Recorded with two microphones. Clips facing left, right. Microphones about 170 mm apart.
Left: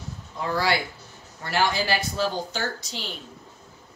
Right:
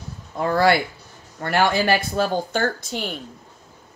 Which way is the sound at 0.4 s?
50° right (ahead or behind).